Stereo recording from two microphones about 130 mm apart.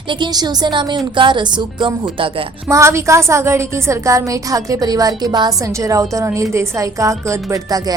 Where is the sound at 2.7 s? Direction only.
20° right (ahead or behind).